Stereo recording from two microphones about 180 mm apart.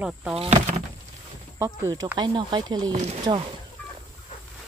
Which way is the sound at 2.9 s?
40° right (ahead or behind).